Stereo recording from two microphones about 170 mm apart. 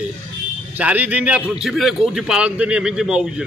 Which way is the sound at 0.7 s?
10° right (ahead or behind).